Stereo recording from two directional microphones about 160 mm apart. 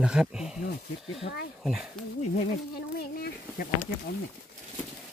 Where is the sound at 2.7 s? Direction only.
70° left (ahead or behind).